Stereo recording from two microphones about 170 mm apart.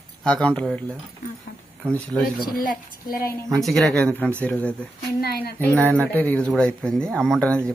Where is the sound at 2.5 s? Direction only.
60° left (ahead or behind).